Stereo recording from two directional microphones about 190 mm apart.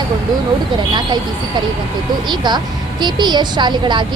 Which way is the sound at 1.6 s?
25° right (ahead or behind).